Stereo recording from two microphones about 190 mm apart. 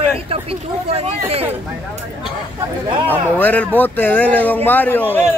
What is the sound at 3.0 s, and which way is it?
Speech, 10° left (ahead or behind).